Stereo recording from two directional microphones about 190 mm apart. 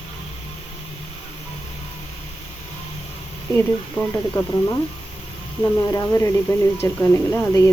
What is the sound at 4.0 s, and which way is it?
Speech, 5° left (ahead or behind).